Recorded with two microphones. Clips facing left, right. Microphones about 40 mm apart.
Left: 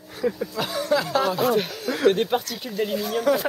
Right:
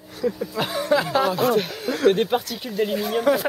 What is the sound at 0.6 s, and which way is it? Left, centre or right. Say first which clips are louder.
Speech: right 3 dB; right.